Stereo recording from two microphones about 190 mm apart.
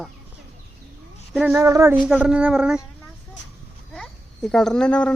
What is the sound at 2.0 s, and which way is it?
Speech, 5° right (ahead or behind).